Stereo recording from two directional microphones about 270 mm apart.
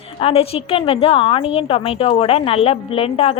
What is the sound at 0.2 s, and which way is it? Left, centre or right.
A woman's voice, left.